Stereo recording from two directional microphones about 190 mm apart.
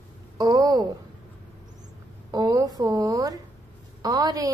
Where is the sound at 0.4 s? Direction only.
20° right (ahead or behind).